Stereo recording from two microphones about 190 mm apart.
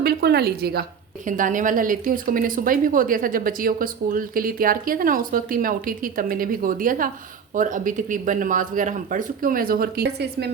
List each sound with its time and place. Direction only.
0.0 s a woman's voice: 55° right (ahead or behind)